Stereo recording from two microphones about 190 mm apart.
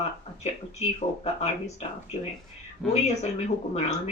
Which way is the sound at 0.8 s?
35° left (ahead or behind).